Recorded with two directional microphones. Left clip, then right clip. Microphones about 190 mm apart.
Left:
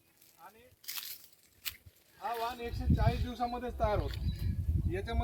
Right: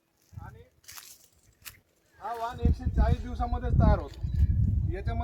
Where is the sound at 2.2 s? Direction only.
15° left (ahead or behind).